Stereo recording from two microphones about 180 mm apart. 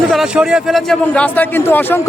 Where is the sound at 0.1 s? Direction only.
5° right (ahead or behind).